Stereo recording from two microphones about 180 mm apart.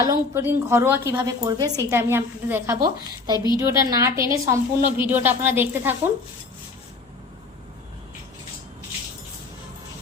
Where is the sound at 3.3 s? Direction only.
25° left (ahead or behind).